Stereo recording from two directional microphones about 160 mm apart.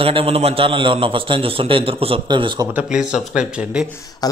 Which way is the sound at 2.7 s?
10° right (ahead or behind).